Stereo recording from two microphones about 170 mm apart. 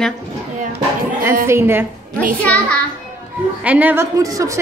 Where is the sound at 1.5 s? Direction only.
15° right (ahead or behind).